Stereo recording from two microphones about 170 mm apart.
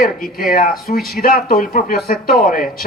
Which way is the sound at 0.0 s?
55° left (ahead or behind).